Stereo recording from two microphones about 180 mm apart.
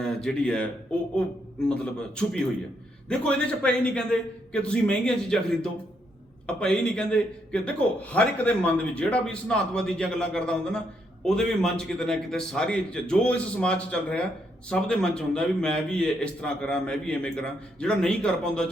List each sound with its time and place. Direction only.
0.0 s a man's voice: 5° left (ahead or behind)